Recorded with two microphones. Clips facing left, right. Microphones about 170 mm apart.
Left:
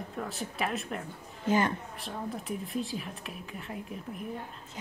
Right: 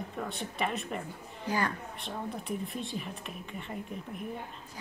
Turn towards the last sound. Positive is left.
turn(degrees=0)  # may be behind; listen again after turning